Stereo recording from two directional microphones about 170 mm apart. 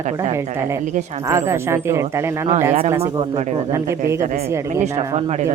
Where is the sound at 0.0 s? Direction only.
45° right (ahead or behind).